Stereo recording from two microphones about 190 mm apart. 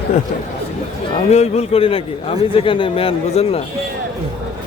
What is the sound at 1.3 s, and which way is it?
A man's voice, 35° left (ahead or behind).